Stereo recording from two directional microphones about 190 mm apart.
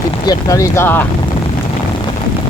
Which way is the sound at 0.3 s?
15° left (ahead or behind).